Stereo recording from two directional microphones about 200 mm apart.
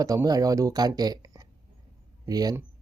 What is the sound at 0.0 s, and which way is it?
Speech, 15° right (ahead or behind).